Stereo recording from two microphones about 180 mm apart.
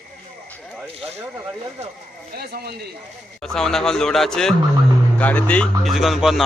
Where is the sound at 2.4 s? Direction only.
60° right (ahead or behind).